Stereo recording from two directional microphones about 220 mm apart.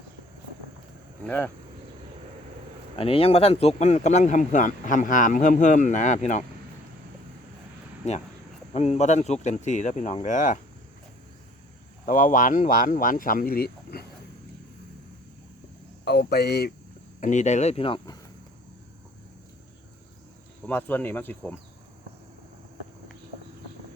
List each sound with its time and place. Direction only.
2.9 s speech: 25° left (ahead or behind)
8.0 s speech: 30° left (ahead or behind)
12.0 s speech: 35° left (ahead or behind)
16.0 s speech: 45° left (ahead or behind)
17.2 s speech: 35° left (ahead or behind)
20.7 s speech: 10° left (ahead or behind)